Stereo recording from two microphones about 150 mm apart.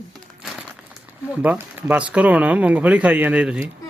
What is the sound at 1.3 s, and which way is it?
Speech, 10° right (ahead or behind).